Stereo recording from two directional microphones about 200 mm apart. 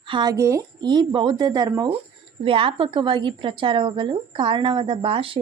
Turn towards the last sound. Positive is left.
turn(degrees=-25)  # may be behind; listen again after turning